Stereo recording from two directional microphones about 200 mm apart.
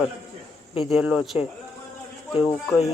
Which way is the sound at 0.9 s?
5° right (ahead or behind).